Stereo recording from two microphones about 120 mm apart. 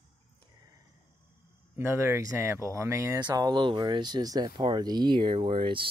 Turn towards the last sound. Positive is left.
turn(degrees=-45)  # may be behind; listen again after turning